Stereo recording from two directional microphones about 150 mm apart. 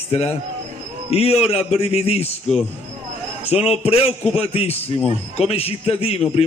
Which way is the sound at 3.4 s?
40° left (ahead or behind).